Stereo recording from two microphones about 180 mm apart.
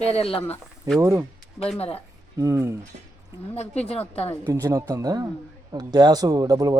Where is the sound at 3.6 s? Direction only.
35° left (ahead or behind).